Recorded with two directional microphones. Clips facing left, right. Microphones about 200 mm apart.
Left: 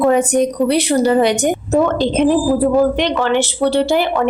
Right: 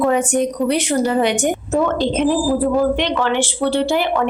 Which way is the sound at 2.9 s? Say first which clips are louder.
Left 3 dB; 40° left (ahead or behind).